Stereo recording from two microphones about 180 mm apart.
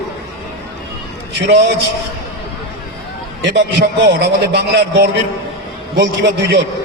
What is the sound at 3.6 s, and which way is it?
A man's voice, 70° right (ahead or behind).